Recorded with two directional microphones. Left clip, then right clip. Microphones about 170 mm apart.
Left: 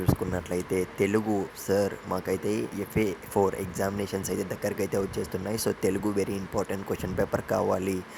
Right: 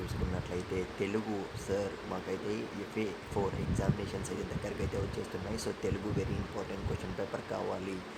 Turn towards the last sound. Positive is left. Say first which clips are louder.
# left 10 dB
turn(degrees=40)  # may be behind; listen again after turning